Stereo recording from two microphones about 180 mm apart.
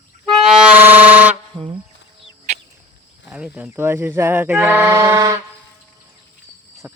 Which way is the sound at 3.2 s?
5° right (ahead or behind).